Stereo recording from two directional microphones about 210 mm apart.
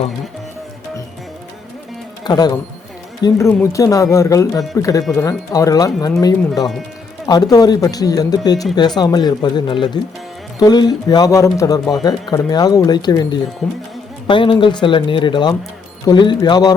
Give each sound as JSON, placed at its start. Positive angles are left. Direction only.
{"t": 2.2, "sound": "speech", "side_deg": 20}